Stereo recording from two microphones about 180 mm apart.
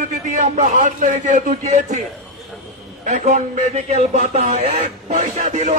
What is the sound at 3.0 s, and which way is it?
A man's voice, 40° right (ahead or behind).